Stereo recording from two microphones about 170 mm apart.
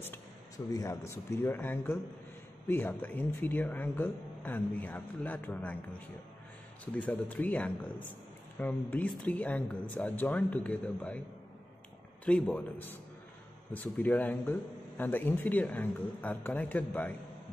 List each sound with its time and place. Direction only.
0.7 s speech: 20° left (ahead or behind)
12.3 s speech: 5° left (ahead or behind)